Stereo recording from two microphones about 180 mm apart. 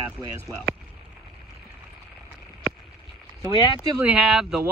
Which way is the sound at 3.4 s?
10° right (ahead or behind).